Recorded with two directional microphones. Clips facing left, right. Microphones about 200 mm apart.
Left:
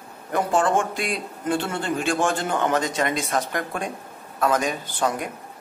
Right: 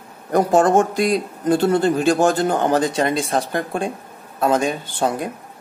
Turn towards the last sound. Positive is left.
turn(degrees=-30)  # may be behind; listen again after turning